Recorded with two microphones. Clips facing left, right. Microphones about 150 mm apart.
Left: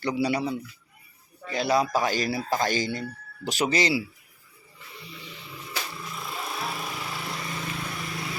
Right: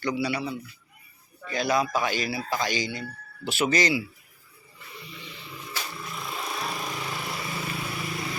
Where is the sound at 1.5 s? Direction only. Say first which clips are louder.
Left 1 dB; 30° left (ahead or behind); by 2.9 s 45° left (ahead or behind).